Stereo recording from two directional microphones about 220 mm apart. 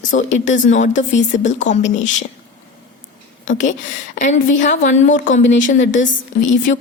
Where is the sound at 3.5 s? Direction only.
35° left (ahead or behind).